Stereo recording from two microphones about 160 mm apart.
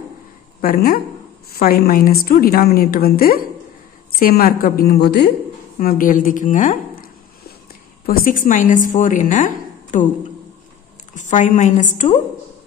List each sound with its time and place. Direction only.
0.6 s a woman's voice: 65° left (ahead or behind); by 5.3 s 90° left
5.8 s a woman's voice: 60° left (ahead or behind)
8.1 s a woman's voice: 55° left (ahead or behind)
11.1 s a woman's voice: 50° left (ahead or behind)